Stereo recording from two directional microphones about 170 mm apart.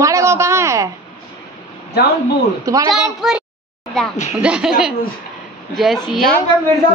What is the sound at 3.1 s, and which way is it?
A woman's voice, 5° right (ahead or behind).